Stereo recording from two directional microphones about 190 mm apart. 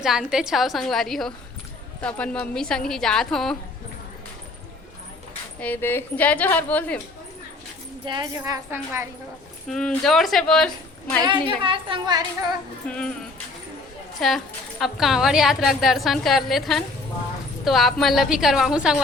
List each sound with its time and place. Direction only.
0.0 s a woman's voice: centre (ahead or behind)
5.5 s a woman's voice: 10° left (ahead or behind)
8.0 s a woman's voice: 20° right (ahead or behind)
9.6 s a woman's voice: centre (ahead or behind)
11.2 s a woman's voice: 25° right (ahead or behind)
12.9 s a woman's voice: 5° left (ahead or behind)
14.2 s a woman's voice: centre (ahead or behind)